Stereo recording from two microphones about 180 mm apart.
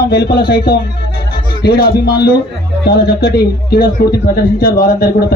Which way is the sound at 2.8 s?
60° left (ahead or behind).